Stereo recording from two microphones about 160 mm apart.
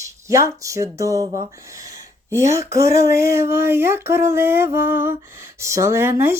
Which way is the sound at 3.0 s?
20° right (ahead or behind).